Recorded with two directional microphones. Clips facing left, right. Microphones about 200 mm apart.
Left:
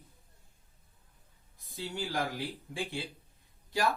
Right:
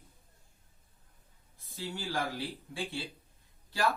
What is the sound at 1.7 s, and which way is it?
Speech, 15° left (ahead or behind).